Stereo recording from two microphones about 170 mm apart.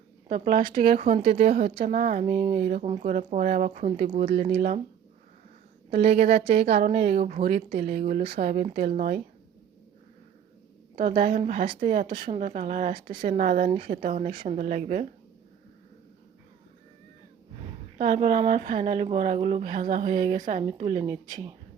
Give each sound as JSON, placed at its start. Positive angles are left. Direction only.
{"t": 0.3, "sound": "speech", "side_deg": -50}
{"t": 0.6, "sound": "speech", "side_deg": -30}
{"t": 1.2, "sound": "speech", "side_deg": -55}
{"t": 4.4, "sound": "speech", "side_deg": -40}
{"t": 6.0, "sound": "speech", "side_deg": -40}
{"t": 6.6, "sound": "speech", "side_deg": -60}
{"t": 6.9, "sound": "speech", "side_deg": -40}
{"t": 8.7, "sound": "speech", "side_deg": -50}
{"t": 11.2, "sound": "speech", "side_deg": -50}
{"t": 13.7, "sound": "speech", "side_deg": -35}
{"t": 13.9, "sound": "speech", "side_deg": -50}
{"t": 18.0, "sound": "speech", "side_deg": -50}
{"t": 20.7, "sound": "speech", "side_deg": -35}